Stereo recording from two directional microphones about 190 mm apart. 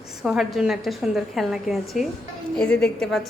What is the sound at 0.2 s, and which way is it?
A woman's voice, centre (ahead or behind).